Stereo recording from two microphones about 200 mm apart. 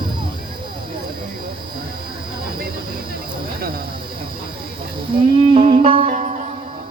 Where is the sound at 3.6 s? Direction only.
50° right (ahead or behind).